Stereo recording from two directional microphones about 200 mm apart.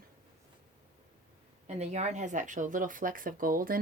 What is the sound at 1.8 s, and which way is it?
Speech, 35° right (ahead or behind).